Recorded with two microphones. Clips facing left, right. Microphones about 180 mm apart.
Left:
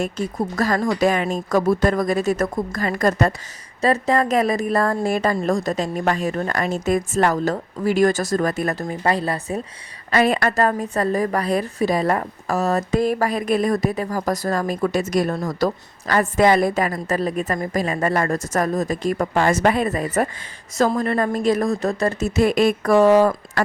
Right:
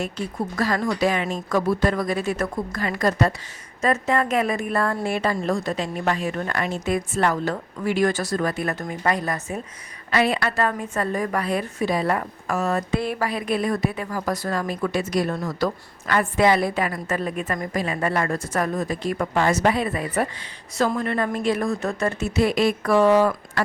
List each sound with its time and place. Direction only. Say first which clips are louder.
0.0 s speech: left 4 dB; 45° left (ahead or behind)
3.8 s a woman's voice: left 3 dB; 35° left (ahead or behind)
8.8 s a woman's voice: left 3 dB; 30° left (ahead or behind)
10.1 s a woman's voice: left 3 dB; 45° left (ahead or behind)